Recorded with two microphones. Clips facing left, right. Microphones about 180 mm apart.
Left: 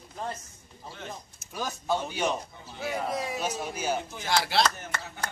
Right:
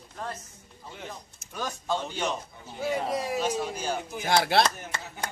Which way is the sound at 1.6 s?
10° left (ahead or behind).